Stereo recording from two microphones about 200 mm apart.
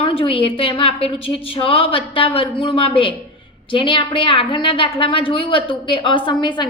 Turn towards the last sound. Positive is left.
turn(degrees=25)  # may be behind; listen again after turning